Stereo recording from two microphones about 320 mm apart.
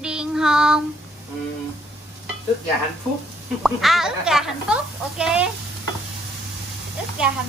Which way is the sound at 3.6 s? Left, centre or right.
Centre.